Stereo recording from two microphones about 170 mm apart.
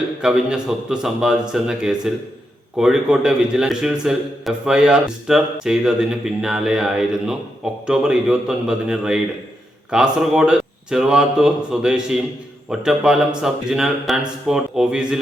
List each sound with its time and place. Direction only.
0.2 s a man's voice: 5° right (ahead or behind)